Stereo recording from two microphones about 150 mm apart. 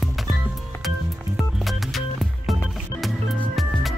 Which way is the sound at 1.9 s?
Centre (ahead or behind).